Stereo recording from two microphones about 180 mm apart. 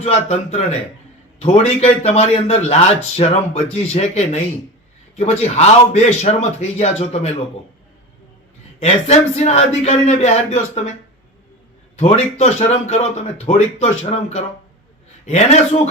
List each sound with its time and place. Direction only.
0.0 s a man's voice: 35° left (ahead or behind)
8.8 s a man's voice: 35° left (ahead or behind)
11.9 s a man's voice: 35° left (ahead or behind)